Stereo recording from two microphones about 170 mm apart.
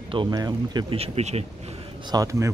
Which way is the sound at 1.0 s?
40° right (ahead or behind).